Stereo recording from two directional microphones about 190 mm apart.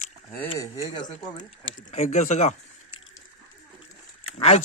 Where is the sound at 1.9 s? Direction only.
40° left (ahead or behind).